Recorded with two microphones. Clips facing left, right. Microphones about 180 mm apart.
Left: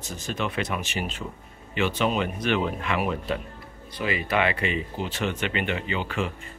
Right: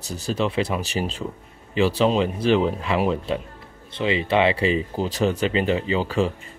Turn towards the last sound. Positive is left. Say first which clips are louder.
# right 6 dB
turn(degrees=-35)  # may be behind; listen again after turning